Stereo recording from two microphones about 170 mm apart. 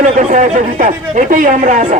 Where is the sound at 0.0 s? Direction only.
45° right (ahead or behind).